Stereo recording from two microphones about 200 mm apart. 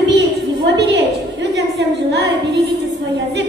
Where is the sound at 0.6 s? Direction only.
60° right (ahead or behind).